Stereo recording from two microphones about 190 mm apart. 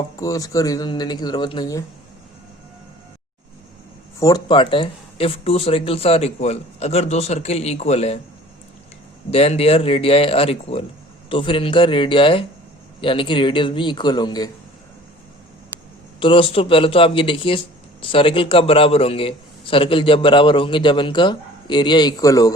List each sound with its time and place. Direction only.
0.2 s a man's voice: 15° left (ahead or behind)
4.2 s speech: 20° left (ahead or behind)
9.3 s a man's voice: 30° left (ahead or behind)
16.2 s a man's voice: 30° left (ahead or behind)